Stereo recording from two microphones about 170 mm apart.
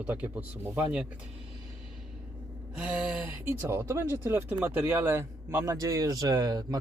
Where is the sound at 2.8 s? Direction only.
5° right (ahead or behind).